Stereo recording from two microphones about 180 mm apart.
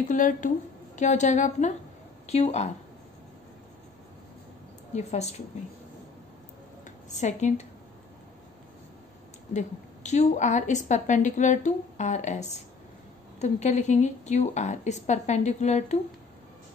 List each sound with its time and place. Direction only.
0.1 s a woman's voice: 50° left (ahead or behind)
4.9 s a woman's voice: 40° left (ahead or behind)
7.1 s a woman's voice: 40° left (ahead or behind)
9.5 s a woman's voice: 40° left (ahead or behind)